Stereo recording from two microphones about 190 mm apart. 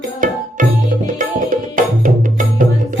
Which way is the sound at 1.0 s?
45° right (ahead or behind).